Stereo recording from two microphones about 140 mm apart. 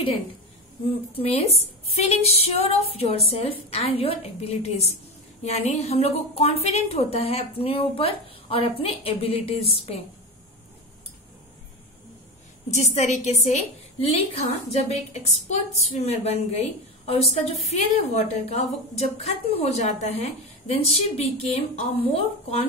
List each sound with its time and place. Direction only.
1.1 s a woman's voice: 45° left (ahead or behind)
12.7 s a woman's voice: 55° left (ahead or behind)